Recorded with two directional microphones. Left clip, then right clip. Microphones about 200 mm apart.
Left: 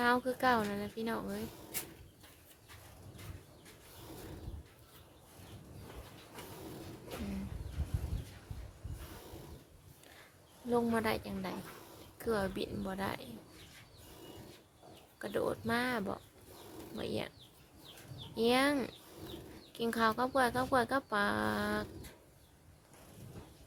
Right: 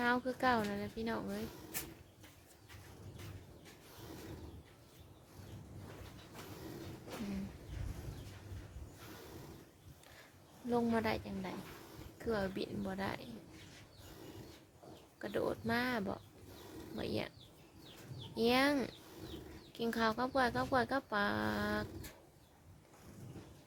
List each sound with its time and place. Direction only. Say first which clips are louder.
0.0 s speech: left 3 dB; 5° left (ahead or behind)
10.7 s speech: left 2 dB; centre (ahead or behind)
15.2 s speech: left 2 dB; centre (ahead or behind)
18.3 s speech: left 2 dB; centre (ahead or behind)